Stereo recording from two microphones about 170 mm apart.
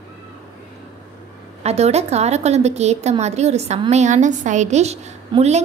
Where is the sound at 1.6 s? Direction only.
40° right (ahead or behind).